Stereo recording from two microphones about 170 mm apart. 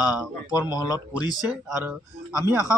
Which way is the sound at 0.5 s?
20° left (ahead or behind).